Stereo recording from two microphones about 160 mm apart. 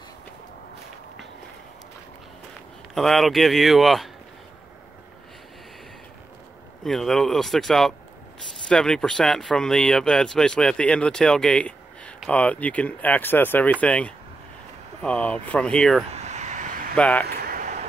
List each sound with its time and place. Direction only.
2.9 s speech: centre (ahead or behind)
6.8 s speech: centre (ahead or behind)
16.1 s vehicle: 45° right (ahead or behind)
16.9 s speech: 5° left (ahead or behind)
17.3 s a sound: 70° right (ahead or behind)